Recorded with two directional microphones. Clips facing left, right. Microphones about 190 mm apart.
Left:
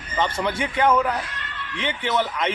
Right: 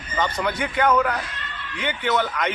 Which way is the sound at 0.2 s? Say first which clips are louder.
Even; 25° left (ahead or behind).